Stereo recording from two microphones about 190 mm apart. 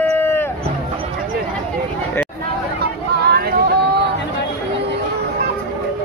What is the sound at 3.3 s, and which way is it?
Vehicle, 55° right (ahead or behind).